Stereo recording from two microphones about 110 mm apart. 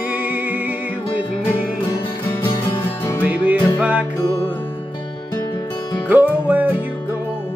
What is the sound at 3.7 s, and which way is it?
Music, 15° right (ahead or behind).